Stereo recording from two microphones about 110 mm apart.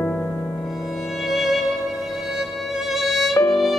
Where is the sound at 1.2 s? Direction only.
Centre (ahead or behind).